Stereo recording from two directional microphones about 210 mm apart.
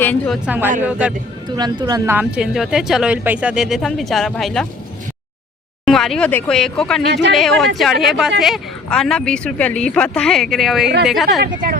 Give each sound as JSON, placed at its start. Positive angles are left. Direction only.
{"t": 0.0, "sound": "a woman's voice", "side_deg": 10}
{"t": 0.4, "sound": "speech", "side_deg": -10}
{"t": 1.5, "sound": "speech", "side_deg": -20}
{"t": 5.8, "sound": "speech", "side_deg": 0}
{"t": 7.1, "sound": "speech", "side_deg": -55}
{"t": 7.3, "sound": "speech", "side_deg": 0}